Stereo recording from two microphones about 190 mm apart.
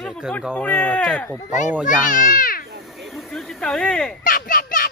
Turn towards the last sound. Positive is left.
turn(degrees=50)  # may be behind; listen again after turning